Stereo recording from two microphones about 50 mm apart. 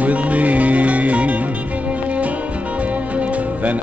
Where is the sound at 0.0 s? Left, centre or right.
Right.